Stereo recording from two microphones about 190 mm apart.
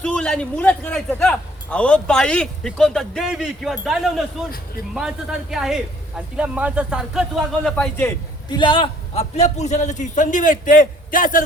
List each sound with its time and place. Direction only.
0.0 s a man's voice: 5° left (ahead or behind)
8.4 s a man's voice: 25° left (ahead or behind); by 11.4 s 45° left (ahead or behind)